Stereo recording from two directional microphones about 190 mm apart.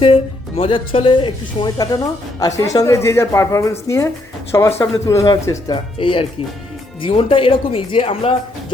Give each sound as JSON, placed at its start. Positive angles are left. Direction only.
{"t": 0.0, "sound": "speech", "side_deg": 30}